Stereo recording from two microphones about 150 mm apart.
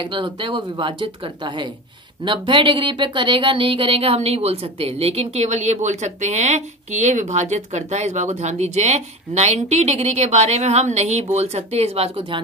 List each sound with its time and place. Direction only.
0.0 s speech: 35° right (ahead or behind)